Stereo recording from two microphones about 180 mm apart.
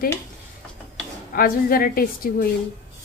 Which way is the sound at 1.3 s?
55° left (ahead or behind).